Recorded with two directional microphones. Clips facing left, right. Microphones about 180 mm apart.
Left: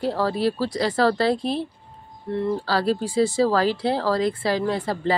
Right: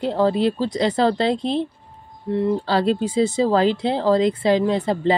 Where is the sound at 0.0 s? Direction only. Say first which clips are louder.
Right 4 dB; 20° right (ahead or behind).